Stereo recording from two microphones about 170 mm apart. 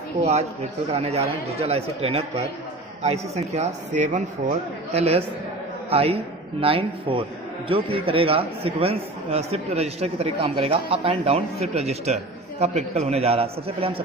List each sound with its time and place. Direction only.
0.2 s a man's voice: 40° right (ahead or behind)